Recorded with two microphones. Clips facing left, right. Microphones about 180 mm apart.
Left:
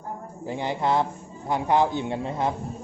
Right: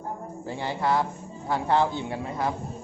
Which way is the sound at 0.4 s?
15° left (ahead or behind).